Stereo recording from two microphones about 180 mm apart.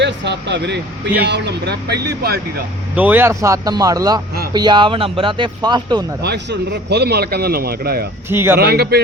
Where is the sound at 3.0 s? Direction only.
10° right (ahead or behind).